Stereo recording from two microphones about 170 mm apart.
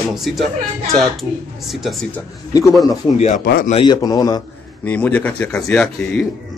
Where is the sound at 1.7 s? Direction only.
Centre (ahead or behind).